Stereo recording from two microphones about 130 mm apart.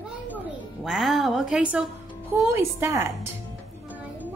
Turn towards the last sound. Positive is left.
turn(degrees=-20)  # may be behind; listen again after turning